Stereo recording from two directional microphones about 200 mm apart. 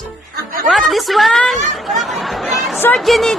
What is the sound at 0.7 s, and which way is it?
Chatter, centre (ahead or behind).